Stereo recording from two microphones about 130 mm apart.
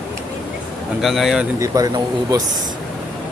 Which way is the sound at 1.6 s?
30° right (ahead or behind).